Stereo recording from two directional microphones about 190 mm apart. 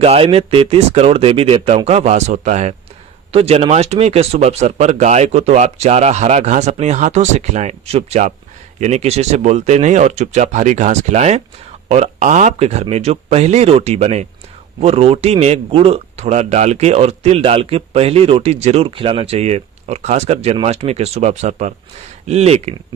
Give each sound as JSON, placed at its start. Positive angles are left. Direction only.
{"t": 0.0, "sound": "speech", "side_deg": -30}